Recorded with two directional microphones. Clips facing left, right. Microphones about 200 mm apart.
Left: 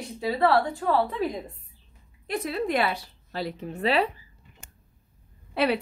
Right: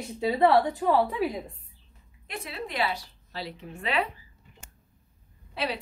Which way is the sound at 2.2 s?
40° left (ahead or behind).